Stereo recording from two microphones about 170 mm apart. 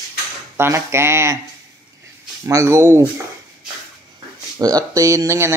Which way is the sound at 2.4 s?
15° right (ahead or behind).